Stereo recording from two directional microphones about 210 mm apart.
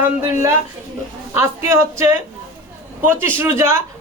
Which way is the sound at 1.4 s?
15° right (ahead or behind).